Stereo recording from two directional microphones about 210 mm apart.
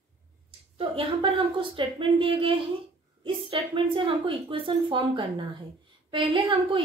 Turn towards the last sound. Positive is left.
turn(degrees=-25)  # may be behind; listen again after turning